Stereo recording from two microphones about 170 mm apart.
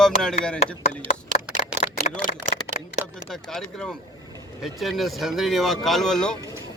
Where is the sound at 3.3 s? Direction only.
Centre (ahead or behind).